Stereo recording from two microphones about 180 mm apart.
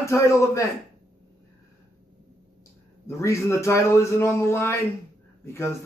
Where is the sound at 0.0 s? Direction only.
15° left (ahead or behind).